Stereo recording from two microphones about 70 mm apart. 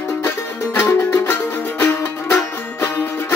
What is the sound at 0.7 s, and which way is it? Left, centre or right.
Music, left.